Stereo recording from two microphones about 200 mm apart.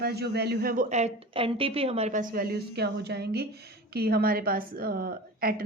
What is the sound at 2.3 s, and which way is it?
A woman's voice, 50° right (ahead or behind).